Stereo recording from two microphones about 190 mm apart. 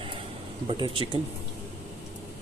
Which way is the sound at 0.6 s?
25° right (ahead or behind).